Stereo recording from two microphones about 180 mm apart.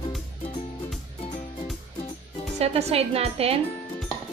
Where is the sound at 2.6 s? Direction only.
35° right (ahead or behind).